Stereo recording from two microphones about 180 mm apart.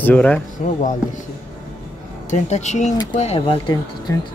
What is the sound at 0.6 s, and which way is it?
Speech, 40° left (ahead or behind).